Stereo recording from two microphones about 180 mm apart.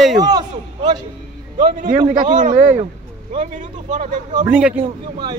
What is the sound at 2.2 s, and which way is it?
Speech, 45° right (ahead or behind).